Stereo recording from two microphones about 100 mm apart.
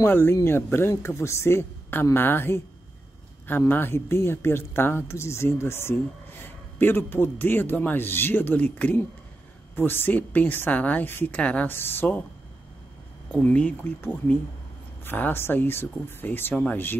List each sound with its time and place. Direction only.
0.0 s speech: 25° left (ahead or behind)
13.3 s speech: 15° left (ahead or behind)